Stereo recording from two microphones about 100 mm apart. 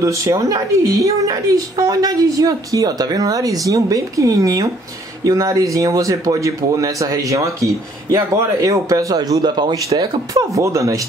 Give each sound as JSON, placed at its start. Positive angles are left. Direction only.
{"t": 0.0, "sound": "speech", "side_deg": -35}
{"t": 9.9, "sound": "speech", "side_deg": -35}